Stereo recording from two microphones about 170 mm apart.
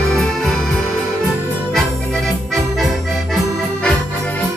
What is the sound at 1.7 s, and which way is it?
Music, centre (ahead or behind).